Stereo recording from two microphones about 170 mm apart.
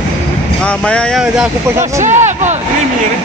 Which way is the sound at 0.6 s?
5° left (ahead or behind).